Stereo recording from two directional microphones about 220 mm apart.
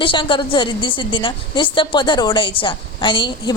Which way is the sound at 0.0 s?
20° left (ahead or behind).